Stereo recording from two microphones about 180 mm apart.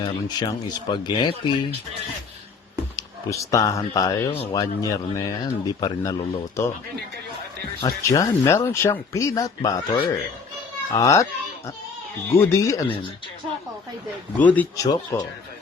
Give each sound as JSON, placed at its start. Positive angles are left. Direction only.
{"t": 0.0, "sound": "a man's voice", "side_deg": 25}
{"t": 2.9, "sound": "speech", "side_deg": 20}
{"t": 4.3, "sound": "speech", "side_deg": 30}
{"t": 4.6, "sound": "a man's voice", "side_deg": 20}
{"t": 7.8, "sound": "speech", "side_deg": 20}
{"t": 10.9, "sound": "speech", "side_deg": 15}
{"t": 14.3, "sound": "speech", "side_deg": 10}
{"t": 14.8, "sound": "a man's voice", "side_deg": 20}